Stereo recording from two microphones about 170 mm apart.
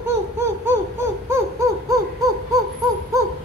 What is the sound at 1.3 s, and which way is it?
Owl, 15° right (ahead or behind).